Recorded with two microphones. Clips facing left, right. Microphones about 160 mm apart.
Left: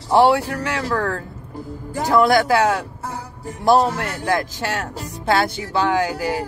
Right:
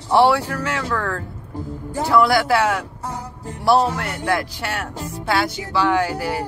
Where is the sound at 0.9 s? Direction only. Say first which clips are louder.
Left 2 dB; 35° left (ahead or behind).